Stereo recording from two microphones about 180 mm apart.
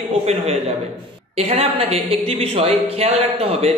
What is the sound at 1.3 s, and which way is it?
Speech, 35° right (ahead or behind).